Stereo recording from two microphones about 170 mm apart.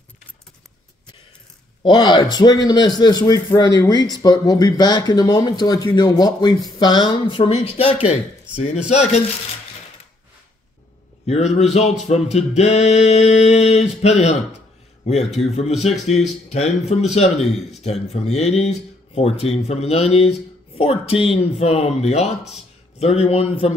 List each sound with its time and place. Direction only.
1.8 s speech: 25° left (ahead or behind)
11.2 s speech: 40° left (ahead or behind)